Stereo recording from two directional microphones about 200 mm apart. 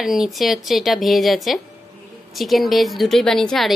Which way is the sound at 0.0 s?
Centre (ahead or behind).